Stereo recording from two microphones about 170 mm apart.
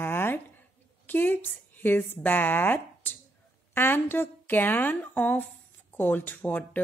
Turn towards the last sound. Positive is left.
turn(degrees=10)  # may be behind; listen again after turning